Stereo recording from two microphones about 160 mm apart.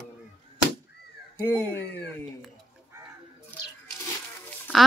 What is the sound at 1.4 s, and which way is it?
Speech, 10° left (ahead or behind).